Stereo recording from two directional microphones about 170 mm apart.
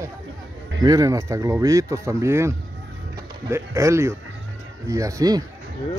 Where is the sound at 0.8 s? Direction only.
20° right (ahead or behind).